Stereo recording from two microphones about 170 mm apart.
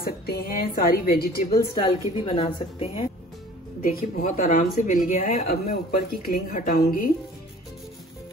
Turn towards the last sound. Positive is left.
turn(degrees=60)  # may be behind; listen again after turning